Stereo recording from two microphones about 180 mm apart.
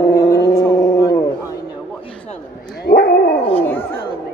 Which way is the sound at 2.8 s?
60° left (ahead or behind).